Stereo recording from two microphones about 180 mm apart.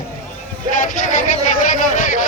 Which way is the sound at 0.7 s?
45° left (ahead or behind).